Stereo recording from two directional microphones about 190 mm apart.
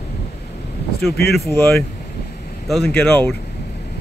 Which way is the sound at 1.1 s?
55° left (ahead or behind).